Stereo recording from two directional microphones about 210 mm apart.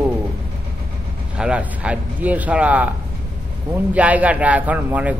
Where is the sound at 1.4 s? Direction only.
5° right (ahead or behind).